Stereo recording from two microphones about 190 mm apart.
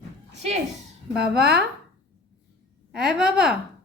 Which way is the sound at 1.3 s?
55° right (ahead or behind).